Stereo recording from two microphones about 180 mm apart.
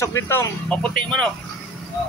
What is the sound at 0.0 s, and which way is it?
Speech, 15° left (ahead or behind).